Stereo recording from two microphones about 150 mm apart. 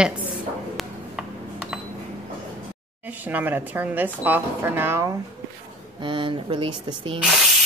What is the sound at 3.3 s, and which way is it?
Speech, 10° right (ahead or behind).